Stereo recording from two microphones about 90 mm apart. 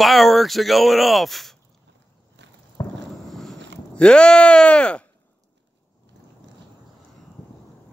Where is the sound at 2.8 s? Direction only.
55° left (ahead or behind).